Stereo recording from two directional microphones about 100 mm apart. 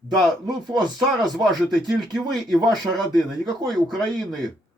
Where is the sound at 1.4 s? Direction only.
Centre (ahead or behind).